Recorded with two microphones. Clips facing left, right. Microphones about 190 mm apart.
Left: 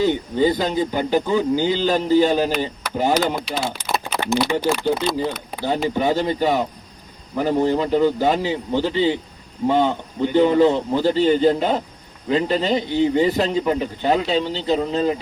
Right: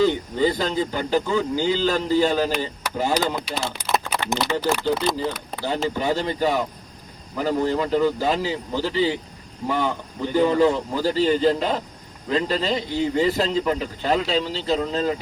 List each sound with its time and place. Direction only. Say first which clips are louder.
0.0 s speech: left 2 dB; 20° left (ahead or behind)
3.4 s speech: left 3 dB; 10° right (ahead or behind)
4.4 s a man's voice: left 4 dB; 15° left (ahead or behind)